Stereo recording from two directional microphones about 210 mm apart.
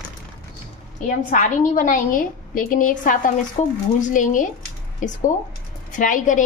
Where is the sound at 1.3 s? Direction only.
40° left (ahead or behind).